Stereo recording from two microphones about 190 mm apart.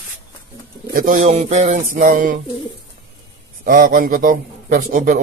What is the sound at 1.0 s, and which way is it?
Speech, 45° right (ahead or behind).